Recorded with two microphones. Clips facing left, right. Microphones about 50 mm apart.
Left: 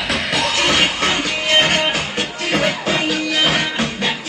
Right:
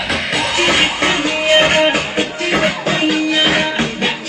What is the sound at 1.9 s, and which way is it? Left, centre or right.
Music, right.